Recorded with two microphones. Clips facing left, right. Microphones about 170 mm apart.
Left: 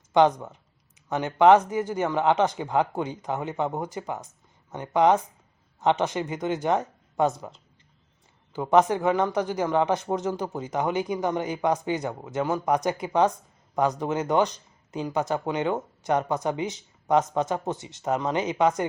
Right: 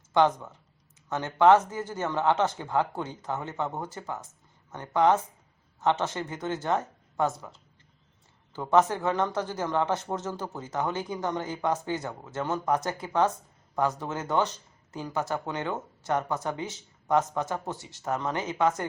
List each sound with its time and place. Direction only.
0.1 s speech: 15° left (ahead or behind)